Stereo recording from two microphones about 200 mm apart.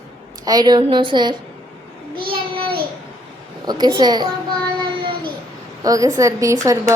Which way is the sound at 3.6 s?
20° right (ahead or behind).